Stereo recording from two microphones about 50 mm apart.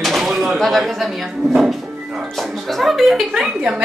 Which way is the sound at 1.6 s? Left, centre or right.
Centre.